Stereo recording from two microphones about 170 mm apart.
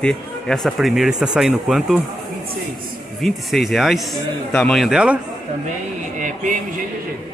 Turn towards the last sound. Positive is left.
turn(degrees=-50)  # may be behind; listen again after turning